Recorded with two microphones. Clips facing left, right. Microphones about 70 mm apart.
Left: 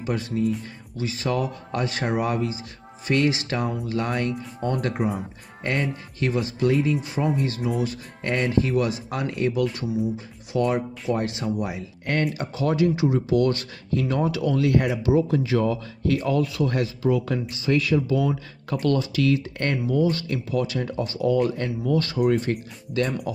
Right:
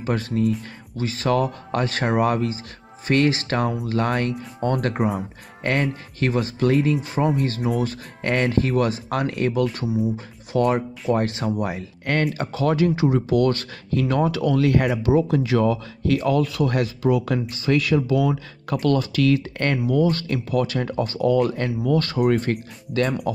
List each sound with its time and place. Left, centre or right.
0.0 s speech: right
10.1 s speech: right
12.4 s speech: right
12.9 s speech: right
13.3 s speech: right
18.9 s speech: right
20.0 s speech: right
21.5 s speech: right
22.0 s speech: right